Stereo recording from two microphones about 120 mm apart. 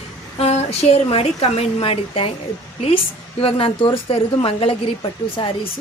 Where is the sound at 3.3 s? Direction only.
50° left (ahead or behind).